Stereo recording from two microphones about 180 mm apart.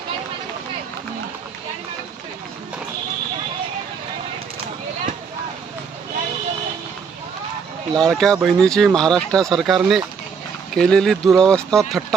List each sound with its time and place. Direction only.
7.9 s speech: 5° left (ahead or behind)